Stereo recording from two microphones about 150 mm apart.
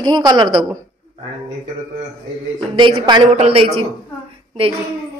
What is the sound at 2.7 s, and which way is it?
Speech, 30° right (ahead or behind).